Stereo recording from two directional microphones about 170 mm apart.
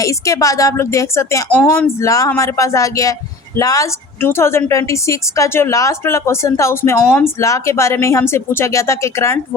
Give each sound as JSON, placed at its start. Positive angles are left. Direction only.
{"t": 0.0, "sound": "a woman's voice", "side_deg": 20}